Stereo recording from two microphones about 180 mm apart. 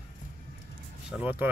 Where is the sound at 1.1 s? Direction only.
10° right (ahead or behind).